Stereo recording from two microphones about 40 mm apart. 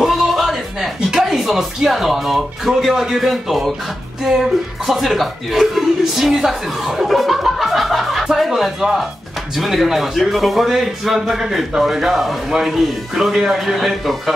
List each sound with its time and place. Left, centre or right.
0.0 s a sound: centre
1.1 s speech: centre
13.7 s speech: centre